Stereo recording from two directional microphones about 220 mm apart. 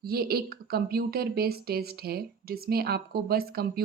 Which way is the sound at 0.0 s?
45° right (ahead or behind).